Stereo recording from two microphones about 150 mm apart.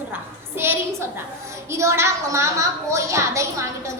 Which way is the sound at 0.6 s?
15° right (ahead or behind).